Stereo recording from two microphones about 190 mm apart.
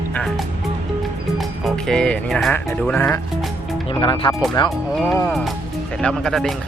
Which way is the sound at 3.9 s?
30° left (ahead or behind).